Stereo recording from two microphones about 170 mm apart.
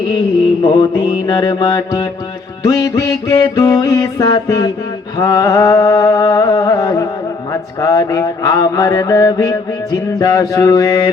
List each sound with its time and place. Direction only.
0.6 s mantra: 25° left (ahead or behind)